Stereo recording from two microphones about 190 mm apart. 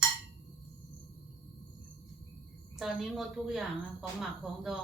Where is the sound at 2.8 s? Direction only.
Centre (ahead or behind).